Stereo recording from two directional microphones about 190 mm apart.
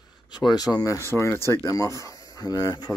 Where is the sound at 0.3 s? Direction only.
20° left (ahead or behind).